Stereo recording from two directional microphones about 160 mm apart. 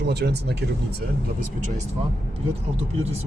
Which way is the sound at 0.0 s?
90° right.